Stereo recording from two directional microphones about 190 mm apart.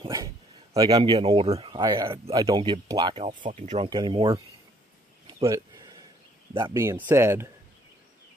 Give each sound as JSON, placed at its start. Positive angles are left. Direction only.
{"t": 0.0, "sound": "a sound", "side_deg": -20}
{"t": 0.7, "sound": "speech", "side_deg": -20}
{"t": 3.4, "sound": "speech", "side_deg": -40}
{"t": 3.9, "sound": "speech", "side_deg": -20}
{"t": 5.4, "sound": "a sound", "side_deg": -20}
{"t": 6.5, "sound": "speech", "side_deg": -20}